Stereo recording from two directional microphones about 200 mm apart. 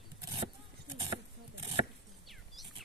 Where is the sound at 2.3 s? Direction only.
Centre (ahead or behind).